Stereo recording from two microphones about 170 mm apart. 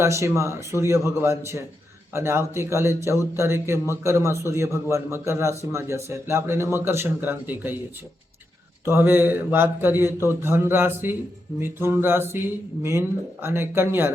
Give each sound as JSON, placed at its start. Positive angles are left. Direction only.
{"t": 0.0, "sound": "a man's voice", "side_deg": -15}
{"t": 8.8, "sound": "a man's voice", "side_deg": -15}